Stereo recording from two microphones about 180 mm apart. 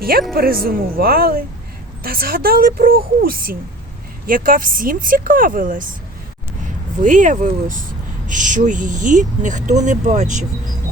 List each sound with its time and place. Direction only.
0.3 s a woman's voice: 55° right (ahead or behind)
7.0 s speech: 45° right (ahead or behind)